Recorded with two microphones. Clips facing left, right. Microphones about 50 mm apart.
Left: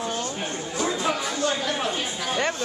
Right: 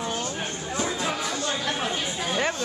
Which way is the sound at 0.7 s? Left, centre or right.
Centre.